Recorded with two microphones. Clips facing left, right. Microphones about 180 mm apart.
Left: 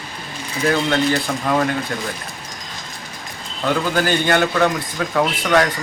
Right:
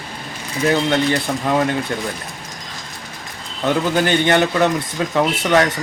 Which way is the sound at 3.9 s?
20° right (ahead or behind).